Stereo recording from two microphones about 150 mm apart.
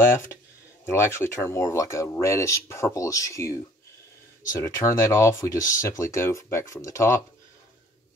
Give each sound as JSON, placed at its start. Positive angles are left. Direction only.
{"t": 0.0, "sound": "speech", "side_deg": 15}